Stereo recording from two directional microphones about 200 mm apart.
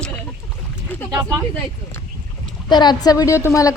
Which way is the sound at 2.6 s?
20° left (ahead or behind).